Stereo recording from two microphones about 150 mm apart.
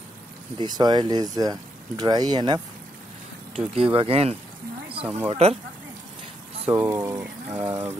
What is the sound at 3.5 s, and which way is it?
Speech, 40° right (ahead or behind).